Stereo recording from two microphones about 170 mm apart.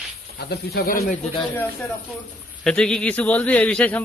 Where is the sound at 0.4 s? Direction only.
75° left (ahead or behind).